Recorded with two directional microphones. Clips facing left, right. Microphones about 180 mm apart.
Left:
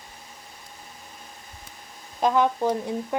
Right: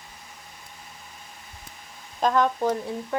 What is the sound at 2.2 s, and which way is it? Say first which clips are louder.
Speech: left 1 dB; 10° left (ahead or behind).